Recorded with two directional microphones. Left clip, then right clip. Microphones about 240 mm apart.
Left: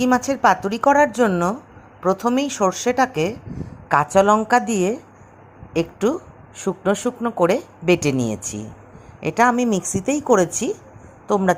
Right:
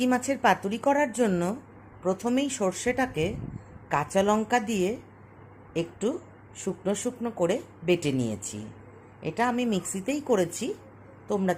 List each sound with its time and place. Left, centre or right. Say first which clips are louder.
0.0 s a woman's voice: left 7 dB; centre